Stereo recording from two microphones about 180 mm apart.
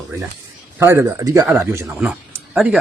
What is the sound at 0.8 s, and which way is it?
Speech, 15° right (ahead or behind).